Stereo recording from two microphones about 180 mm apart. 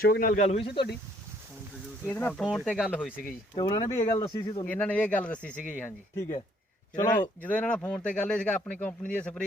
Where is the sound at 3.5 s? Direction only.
25° left (ahead or behind).